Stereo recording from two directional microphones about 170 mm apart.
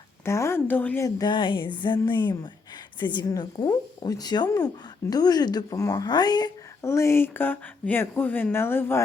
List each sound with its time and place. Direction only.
0.3 s speech: 15° left (ahead or behind)